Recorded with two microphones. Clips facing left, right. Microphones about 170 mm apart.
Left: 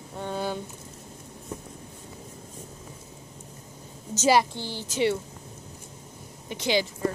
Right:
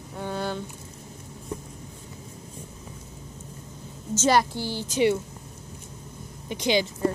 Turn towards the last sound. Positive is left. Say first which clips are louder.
# right 2 dB
turn(degrees=-15)  # may be behind; listen again after turning